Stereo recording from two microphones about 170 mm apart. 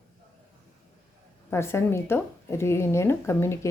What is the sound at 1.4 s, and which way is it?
Speech, 15° left (ahead or behind).